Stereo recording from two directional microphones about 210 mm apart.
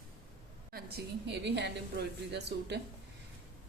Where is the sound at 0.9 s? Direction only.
55° right (ahead or behind).